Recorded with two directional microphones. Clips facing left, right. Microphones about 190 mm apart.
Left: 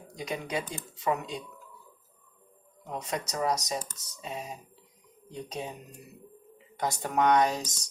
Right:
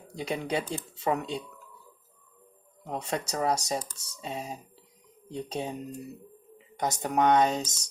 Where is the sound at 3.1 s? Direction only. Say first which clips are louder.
Right 1 dB; 30° right (ahead or behind).